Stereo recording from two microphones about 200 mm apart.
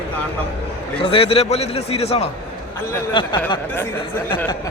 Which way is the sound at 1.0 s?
30° left (ahead or behind).